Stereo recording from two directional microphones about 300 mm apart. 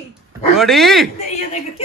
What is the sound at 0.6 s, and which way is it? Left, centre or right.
Speech, centre.